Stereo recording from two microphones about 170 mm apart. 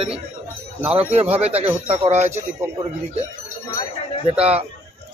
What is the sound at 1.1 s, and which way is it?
Speech, 35° right (ahead or behind).